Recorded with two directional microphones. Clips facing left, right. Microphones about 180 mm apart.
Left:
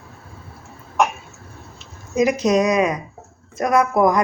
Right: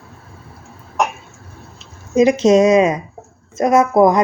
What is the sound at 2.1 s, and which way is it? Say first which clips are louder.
Speech: right 6 dB; 25° right (ahead or behind).